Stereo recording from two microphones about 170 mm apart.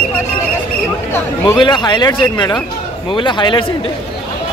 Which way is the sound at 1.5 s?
25° left (ahead or behind).